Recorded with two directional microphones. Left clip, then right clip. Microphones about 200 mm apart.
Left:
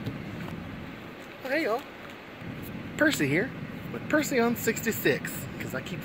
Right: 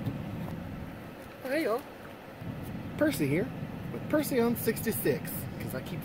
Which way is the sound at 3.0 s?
10° left (ahead or behind).